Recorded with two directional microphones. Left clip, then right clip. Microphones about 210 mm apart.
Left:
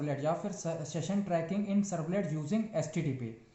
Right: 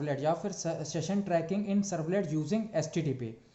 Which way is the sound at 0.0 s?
40° right (ahead or behind).